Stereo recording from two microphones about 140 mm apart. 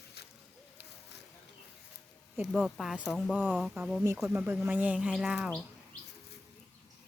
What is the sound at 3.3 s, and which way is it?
Speech, 10° right (ahead or behind).